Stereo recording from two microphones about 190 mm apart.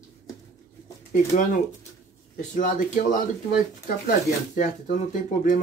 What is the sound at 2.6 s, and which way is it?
Speech, 45° left (ahead or behind).